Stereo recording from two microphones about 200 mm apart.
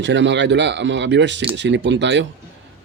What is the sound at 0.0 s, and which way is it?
Speech, 65° right (ahead or behind).